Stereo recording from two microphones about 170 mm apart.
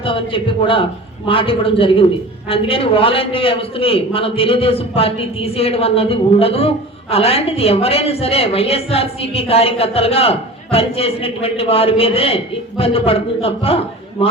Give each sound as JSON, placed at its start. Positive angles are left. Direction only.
{"t": 0.0, "sound": "a man's voice", "side_deg": 30}